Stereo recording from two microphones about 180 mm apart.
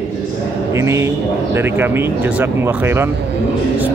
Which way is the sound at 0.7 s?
15° right (ahead or behind).